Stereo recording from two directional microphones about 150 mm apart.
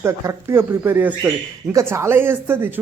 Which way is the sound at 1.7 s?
20° right (ahead or behind).